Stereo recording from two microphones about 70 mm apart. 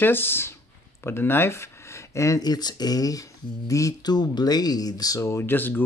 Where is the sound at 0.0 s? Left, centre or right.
Left.